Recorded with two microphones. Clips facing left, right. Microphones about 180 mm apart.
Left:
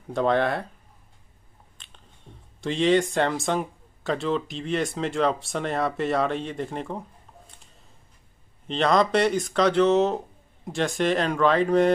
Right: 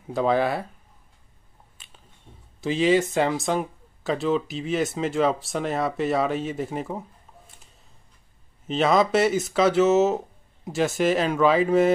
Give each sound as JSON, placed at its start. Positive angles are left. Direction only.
{"t": 0.1, "sound": "speech", "side_deg": 0}
{"t": 1.8, "sound": "finger snapping", "side_deg": -5}
{"t": 2.6, "sound": "speech", "side_deg": -5}
{"t": 8.6, "sound": "speech", "side_deg": -5}